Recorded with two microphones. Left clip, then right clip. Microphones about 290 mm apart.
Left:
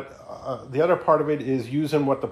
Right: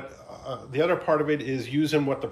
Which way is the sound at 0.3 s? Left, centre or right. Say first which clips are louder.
Left 4 dB; centre.